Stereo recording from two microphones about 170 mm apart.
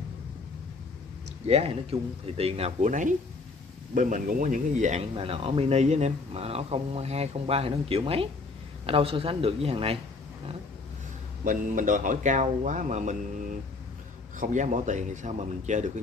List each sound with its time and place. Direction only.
1.4 s a man's voice: 35° right (ahead or behind)
5.1 s speech: 35° right (ahead or behind)
11.4 s a man's voice: 50° right (ahead or behind)
14.4 s a man's voice: 50° right (ahead or behind)